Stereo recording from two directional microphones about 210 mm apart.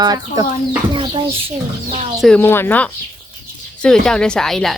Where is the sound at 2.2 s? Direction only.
5° left (ahead or behind).